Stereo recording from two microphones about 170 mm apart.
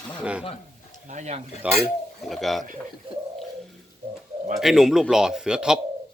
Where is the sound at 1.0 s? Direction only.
45° right (ahead or behind).